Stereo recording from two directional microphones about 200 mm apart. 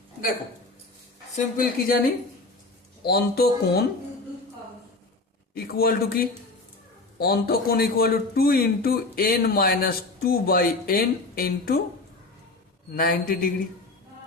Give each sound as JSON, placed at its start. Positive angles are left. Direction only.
{"t": 1.5, "sound": "a man's voice", "side_deg": 45}
{"t": 5.5, "sound": "a man's voice", "side_deg": 50}
{"t": 12.9, "sound": "a man's voice", "side_deg": 50}